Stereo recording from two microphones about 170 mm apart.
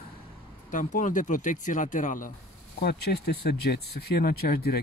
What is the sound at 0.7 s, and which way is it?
Speech, 50° left (ahead or behind).